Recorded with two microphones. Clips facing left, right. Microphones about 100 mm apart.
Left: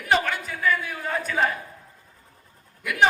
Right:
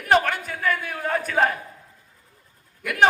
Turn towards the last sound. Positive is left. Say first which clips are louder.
# right 1 dB
turn(degrees=-50)  # may be behind; listen again after turning